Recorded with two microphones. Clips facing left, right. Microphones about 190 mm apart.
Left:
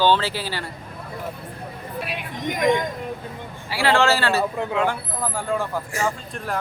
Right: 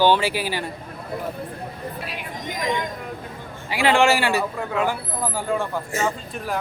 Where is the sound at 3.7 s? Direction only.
15° right (ahead or behind); by 5.8 s centre (ahead or behind).